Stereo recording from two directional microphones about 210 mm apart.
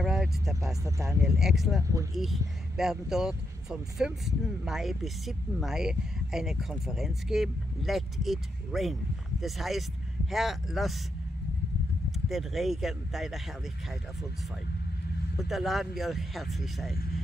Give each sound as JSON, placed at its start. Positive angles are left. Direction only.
{"t": 0.0, "sound": "vehicle", "side_deg": 0}
{"t": 0.8, "sound": "speech", "side_deg": -15}
{"t": 1.4, "sound": "speech", "side_deg": 0}
{"t": 1.8, "sound": "speech", "side_deg": -15}
{"t": 2.1, "sound": "speech", "side_deg": 0}
{"t": 12.3, "sound": "speech", "side_deg": 0}
{"t": 15.3, "sound": "speech", "side_deg": 0}
{"t": 16.9, "sound": "speech", "side_deg": 45}